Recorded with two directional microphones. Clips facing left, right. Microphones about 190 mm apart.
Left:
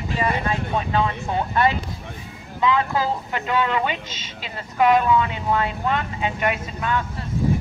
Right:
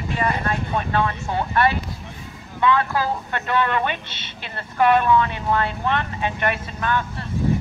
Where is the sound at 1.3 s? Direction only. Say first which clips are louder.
Even; 20° left (ahead or behind).